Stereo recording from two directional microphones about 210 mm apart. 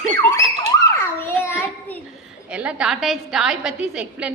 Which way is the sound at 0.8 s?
10° left (ahead or behind).